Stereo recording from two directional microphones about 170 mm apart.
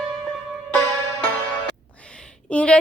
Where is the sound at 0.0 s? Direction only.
Centre (ahead or behind).